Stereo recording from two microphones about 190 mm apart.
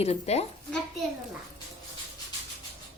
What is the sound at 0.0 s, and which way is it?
Speech, 35° left (ahead or behind).